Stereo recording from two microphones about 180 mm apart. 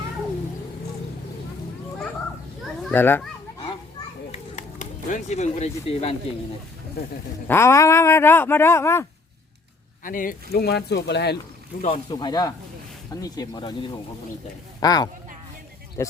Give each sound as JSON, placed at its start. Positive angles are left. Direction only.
{"t": 2.9, "sound": "speech", "side_deg": 10}
{"t": 4.3, "sound": "a sound", "side_deg": 45}
{"t": 7.4, "sound": "speech", "side_deg": 15}
{"t": 10.0, "sound": "speech", "side_deg": 50}
{"t": 11.7, "sound": "speech", "side_deg": 50}
{"t": 12.1, "sound": "speech", "side_deg": 20}
{"t": 14.8, "sound": "speech", "side_deg": 20}